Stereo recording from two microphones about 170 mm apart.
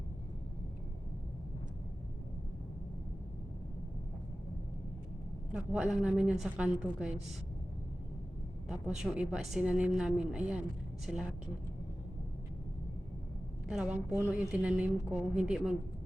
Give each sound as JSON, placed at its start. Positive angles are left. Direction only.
{"t": 5.5, "sound": "a woman's voice", "side_deg": -5}
{"t": 9.0, "sound": "a woman's voice", "side_deg": -5}
{"t": 13.7, "sound": "a woman's voice", "side_deg": -5}